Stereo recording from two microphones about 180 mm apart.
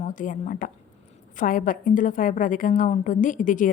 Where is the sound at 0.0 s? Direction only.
45° left (ahead or behind).